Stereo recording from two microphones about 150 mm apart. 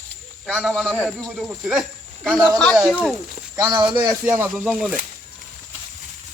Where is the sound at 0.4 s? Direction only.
Centre (ahead or behind).